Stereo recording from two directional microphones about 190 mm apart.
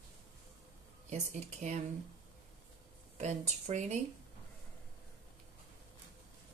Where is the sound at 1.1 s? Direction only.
35° right (ahead or behind).